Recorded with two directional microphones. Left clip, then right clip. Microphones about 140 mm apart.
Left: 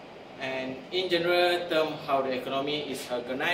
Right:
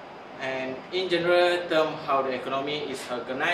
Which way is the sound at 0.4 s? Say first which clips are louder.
Right 2 dB; 25° right (ahead or behind).